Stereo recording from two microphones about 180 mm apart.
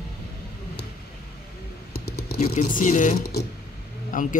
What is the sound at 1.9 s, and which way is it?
Computer keyboard, 60° left (ahead or behind).